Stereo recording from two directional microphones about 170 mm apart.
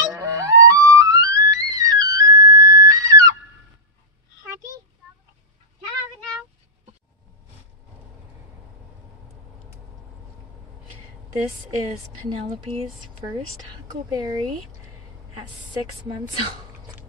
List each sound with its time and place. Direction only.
0.0 s music: 20° right (ahead or behind)
14.1 s speech: 25° right (ahead or behind)